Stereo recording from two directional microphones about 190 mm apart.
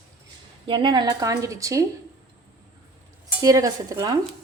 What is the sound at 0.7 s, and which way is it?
A woman's voice, 25° right (ahead or behind).